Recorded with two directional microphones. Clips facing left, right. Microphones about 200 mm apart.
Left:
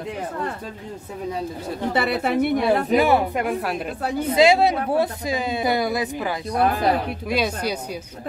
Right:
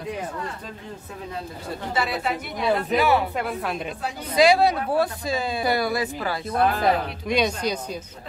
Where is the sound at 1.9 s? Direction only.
60° left (ahead or behind).